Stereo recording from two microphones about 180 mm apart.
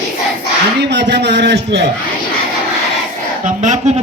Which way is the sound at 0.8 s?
75° right (ahead or behind).